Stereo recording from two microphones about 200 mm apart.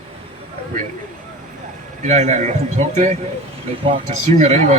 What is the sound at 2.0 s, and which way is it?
Speech, 35° right (ahead or behind).